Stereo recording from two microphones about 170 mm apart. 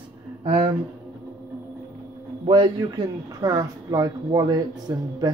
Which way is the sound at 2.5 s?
25° right (ahead or behind).